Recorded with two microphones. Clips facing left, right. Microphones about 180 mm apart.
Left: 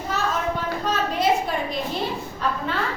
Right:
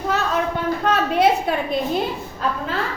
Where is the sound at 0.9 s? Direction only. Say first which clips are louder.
Right 4 dB; 65° right (ahead or behind).